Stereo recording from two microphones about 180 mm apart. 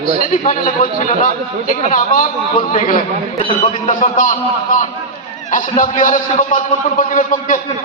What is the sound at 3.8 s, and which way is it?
A man's voice, 45° left (ahead or behind).